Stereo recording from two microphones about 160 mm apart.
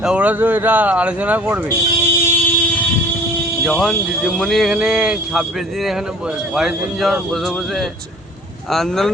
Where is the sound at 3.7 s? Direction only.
5° left (ahead or behind).